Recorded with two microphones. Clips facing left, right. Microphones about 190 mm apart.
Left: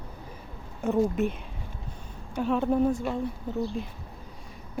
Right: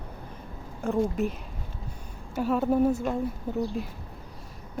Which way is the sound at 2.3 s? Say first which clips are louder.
Right 1 dB; 5° right (ahead or behind).